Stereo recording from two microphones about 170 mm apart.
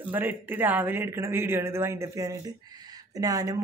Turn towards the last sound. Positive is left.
turn(degrees=-20)  # may be behind; listen again after turning